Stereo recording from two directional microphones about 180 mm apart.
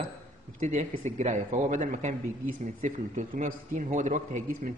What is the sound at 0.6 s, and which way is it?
Speech, 40° right (ahead or behind).